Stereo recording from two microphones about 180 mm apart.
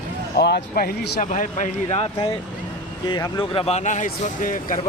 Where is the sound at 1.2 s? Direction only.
45° left (ahead or behind).